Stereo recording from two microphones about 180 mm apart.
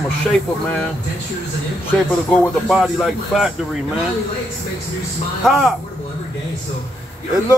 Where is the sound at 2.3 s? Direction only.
Centre (ahead or behind).